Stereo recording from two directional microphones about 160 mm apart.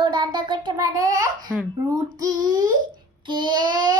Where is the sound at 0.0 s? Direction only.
30° right (ahead or behind).